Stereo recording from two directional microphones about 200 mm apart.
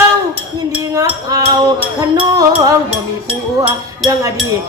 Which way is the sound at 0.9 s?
20° right (ahead or behind).